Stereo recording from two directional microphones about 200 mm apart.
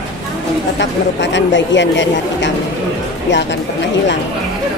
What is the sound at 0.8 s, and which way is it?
Speech, 65° left (ahead or behind).